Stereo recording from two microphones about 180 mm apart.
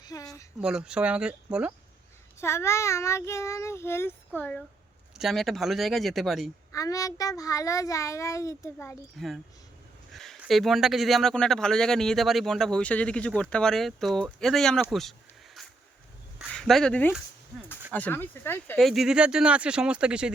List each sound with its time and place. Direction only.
0.0 s speech: 20° left (ahead or behind)
0.6 s speech: 5° right (ahead or behind)
2.4 s a child's voice: 15° left (ahead or behind)
6.7 s a child's voice: 20° left (ahead or behind)
9.1 s speech: centre (ahead or behind)
16.5 s a child's voice: centre (ahead or behind)
18.8 s speech: centre (ahead or behind)